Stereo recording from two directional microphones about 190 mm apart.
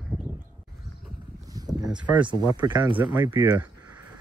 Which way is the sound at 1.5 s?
20° right (ahead or behind).